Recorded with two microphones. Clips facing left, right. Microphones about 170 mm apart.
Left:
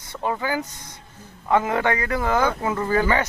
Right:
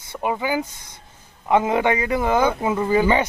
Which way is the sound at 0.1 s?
15° right (ahead or behind).